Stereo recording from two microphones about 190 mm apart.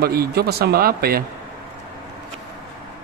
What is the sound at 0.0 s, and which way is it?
Speech, 55° right (ahead or behind).